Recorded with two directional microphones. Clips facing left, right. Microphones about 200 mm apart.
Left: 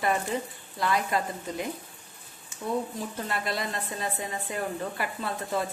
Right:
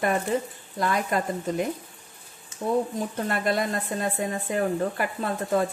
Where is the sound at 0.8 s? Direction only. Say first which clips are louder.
Right 2 dB; 45° right (ahead or behind).